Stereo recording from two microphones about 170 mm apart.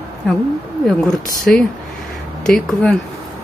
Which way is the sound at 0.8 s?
5° left (ahead or behind).